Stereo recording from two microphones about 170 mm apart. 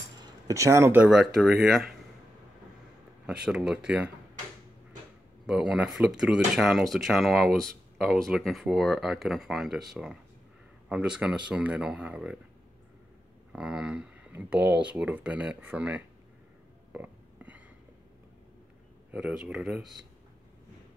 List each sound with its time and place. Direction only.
0.2 s a sound: 20° right (ahead or behind)
1.0 s speech: centre (ahead or behind)
3.3 s speech: 5° right (ahead or behind)
5.5 s speech: 5° right (ahead or behind)
13.5 s speech: 5° right (ahead or behind)
16.9 s burping: 10° right (ahead or behind)
19.1 s speech: 10° right (ahead or behind)